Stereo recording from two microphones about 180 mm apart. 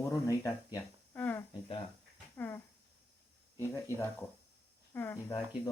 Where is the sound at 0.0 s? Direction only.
15° left (ahead or behind).